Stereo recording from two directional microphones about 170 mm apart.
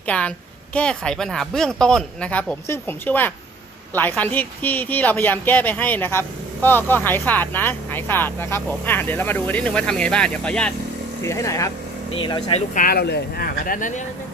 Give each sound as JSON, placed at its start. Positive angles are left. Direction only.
{"t": 0.1, "sound": "speech", "side_deg": 10}
{"t": 11.3, "sound": "speech", "side_deg": 15}
{"t": 12.1, "sound": "speech", "side_deg": 30}
{"t": 12.7, "sound": "speech", "side_deg": 60}